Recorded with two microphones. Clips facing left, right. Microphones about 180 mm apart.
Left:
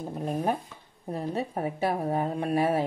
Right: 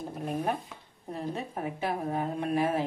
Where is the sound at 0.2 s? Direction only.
40° left (ahead or behind).